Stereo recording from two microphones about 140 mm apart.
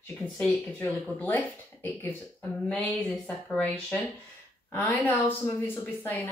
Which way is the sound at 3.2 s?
5° left (ahead or behind).